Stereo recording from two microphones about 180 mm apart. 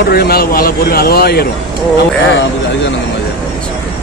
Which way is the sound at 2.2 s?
85° left.